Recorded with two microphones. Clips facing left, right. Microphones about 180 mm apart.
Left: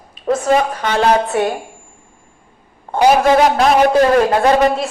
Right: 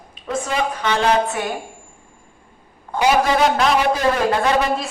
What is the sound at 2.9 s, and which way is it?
A man's voice, 45° left (ahead or behind).